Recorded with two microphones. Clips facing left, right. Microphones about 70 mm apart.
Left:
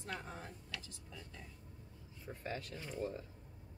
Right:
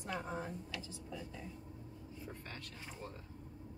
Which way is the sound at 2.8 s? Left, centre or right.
Centre.